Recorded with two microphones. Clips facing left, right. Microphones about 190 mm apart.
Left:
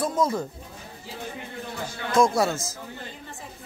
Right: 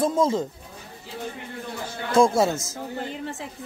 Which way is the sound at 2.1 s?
25° right (ahead or behind).